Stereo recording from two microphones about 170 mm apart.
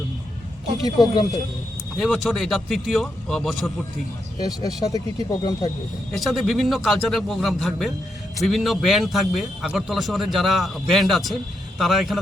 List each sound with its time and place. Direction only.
0.8 s speech: 20° left (ahead or behind)
2.0 s a man's voice: centre (ahead or behind)
4.4 s speech: 20° left (ahead or behind)
6.1 s a man's voice: centre (ahead or behind)